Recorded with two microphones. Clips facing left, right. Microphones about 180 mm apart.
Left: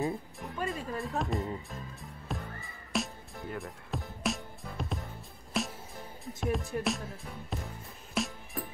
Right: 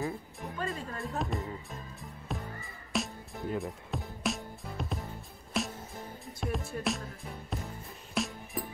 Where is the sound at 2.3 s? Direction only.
Centre (ahead or behind).